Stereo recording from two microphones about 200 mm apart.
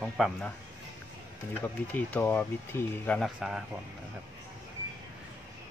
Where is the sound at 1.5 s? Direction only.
10° left (ahead or behind).